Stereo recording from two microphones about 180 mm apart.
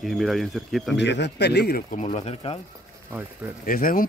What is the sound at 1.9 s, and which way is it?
Speech, 35° left (ahead or behind).